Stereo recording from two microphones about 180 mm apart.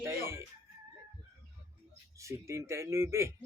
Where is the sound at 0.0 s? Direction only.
15° right (ahead or behind).